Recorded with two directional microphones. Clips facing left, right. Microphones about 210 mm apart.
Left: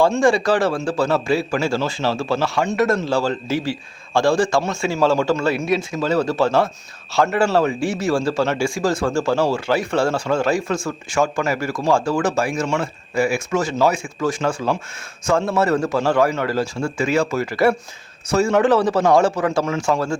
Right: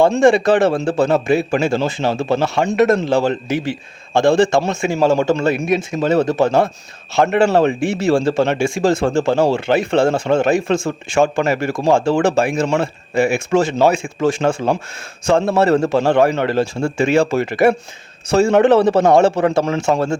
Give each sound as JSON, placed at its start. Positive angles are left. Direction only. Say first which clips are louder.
{"t": 0.2, "sound": "a man's voice", "louder": "right 4 dB", "side_deg": -20}